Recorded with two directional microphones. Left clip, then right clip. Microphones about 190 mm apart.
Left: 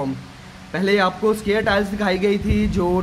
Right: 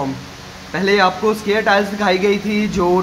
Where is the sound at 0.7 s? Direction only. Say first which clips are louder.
Right 4 dB; 20° left (ahead or behind).